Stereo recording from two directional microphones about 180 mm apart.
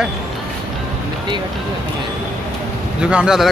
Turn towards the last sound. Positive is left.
turn(degrees=-5)  # may be behind; listen again after turning